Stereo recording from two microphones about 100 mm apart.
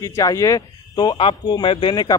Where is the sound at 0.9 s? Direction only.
55° left (ahead or behind).